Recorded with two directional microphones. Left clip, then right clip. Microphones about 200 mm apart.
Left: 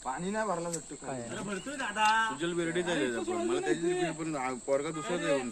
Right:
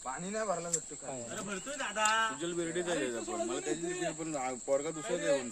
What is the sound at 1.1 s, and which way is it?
Speech, centre (ahead or behind).